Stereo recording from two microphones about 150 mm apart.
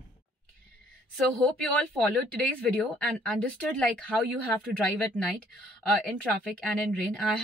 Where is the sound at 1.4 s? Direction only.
5° left (ahead or behind).